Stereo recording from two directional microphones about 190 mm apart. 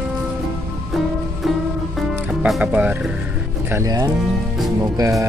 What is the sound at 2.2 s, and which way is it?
Speech, 5° right (ahead or behind).